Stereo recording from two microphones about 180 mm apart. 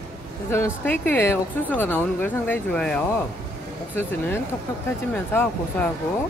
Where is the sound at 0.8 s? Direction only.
10° left (ahead or behind).